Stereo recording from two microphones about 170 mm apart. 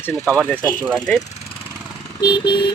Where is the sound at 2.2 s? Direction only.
25° left (ahead or behind).